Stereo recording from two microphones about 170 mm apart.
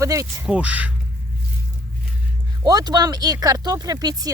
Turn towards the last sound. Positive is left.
turn(degrees=-25)  # may be behind; listen again after turning